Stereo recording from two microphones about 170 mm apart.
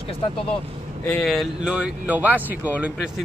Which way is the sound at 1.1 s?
Centre (ahead or behind).